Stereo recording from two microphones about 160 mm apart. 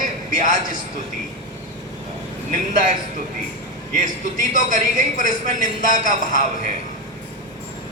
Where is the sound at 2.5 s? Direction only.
55° right (ahead or behind).